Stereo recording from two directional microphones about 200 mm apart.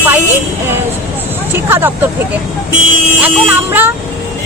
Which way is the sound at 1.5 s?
10° right (ahead or behind).